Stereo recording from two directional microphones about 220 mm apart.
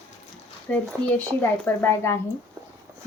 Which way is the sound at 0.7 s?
5° left (ahead or behind).